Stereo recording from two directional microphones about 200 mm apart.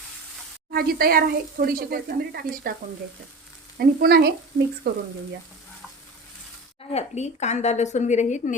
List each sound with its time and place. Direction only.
0.7 s speech: 50° right (ahead or behind)
3.8 s speech: 50° right (ahead or behind)
6.9 s a woman's voice: 35° left (ahead or behind)